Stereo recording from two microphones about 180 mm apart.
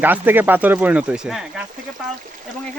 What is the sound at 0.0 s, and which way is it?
Speech, 10° right (ahead or behind).